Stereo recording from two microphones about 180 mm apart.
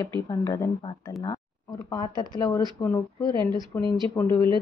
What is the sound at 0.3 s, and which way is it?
Speech, 15° left (ahead or behind).